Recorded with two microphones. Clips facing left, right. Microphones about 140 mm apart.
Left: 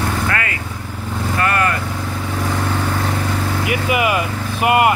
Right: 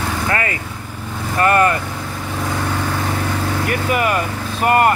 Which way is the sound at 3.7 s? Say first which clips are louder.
Left 1 dB; 10° left (ahead or behind).